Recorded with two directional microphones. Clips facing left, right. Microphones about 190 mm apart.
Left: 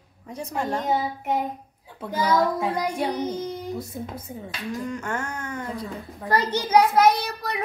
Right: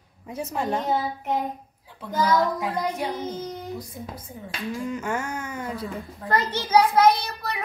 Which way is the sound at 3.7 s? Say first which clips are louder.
Left 3 dB; 25° left (ahead or behind).